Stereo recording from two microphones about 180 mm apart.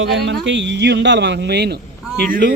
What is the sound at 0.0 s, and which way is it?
A man's voice, 90° right.